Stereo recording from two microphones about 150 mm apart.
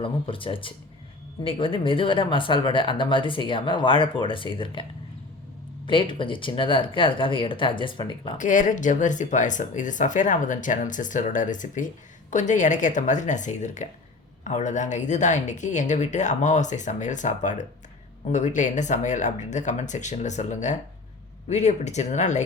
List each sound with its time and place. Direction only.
0.0 s speech: 35° left (ahead or behind)
8.4 s speech: 60° left (ahead or behind)